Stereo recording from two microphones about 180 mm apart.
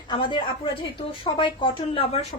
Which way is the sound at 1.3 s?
30° left (ahead or behind).